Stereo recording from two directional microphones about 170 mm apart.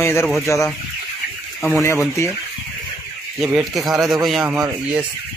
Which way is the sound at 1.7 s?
15° left (ahead or behind).